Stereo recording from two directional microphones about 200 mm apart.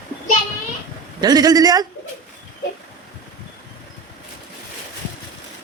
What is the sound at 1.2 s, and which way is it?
Speech, 20° right (ahead or behind).